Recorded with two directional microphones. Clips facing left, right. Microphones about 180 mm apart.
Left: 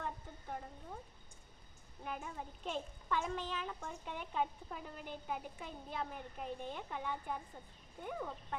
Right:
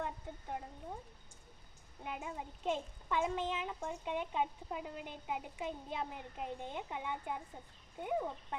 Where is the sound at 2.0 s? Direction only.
20° right (ahead or behind).